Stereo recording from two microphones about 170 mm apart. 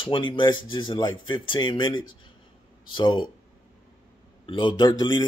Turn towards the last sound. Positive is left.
turn(degrees=25)  # may be behind; listen again after turning